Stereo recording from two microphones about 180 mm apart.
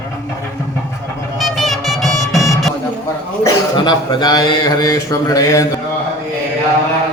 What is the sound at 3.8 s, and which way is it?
Speech, 25° left (ahead or behind).